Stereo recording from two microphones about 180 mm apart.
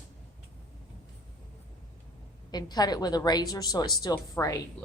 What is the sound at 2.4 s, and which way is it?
A woman's voice, 20° left (ahead or behind).